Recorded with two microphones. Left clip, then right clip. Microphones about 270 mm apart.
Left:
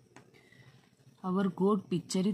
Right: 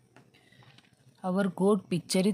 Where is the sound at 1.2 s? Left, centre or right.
Centre.